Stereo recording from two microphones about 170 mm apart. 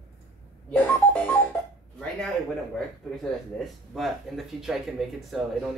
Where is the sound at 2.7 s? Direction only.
Centre (ahead or behind).